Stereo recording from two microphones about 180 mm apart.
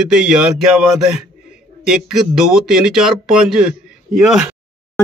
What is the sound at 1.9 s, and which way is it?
Speech, centre (ahead or behind).